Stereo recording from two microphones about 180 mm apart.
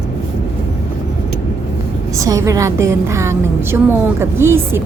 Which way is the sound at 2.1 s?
20° right (ahead or behind).